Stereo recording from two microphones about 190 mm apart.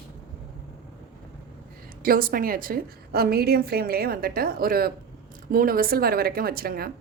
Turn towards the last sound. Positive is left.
turn(degrees=-50)  # may be behind; listen again after turning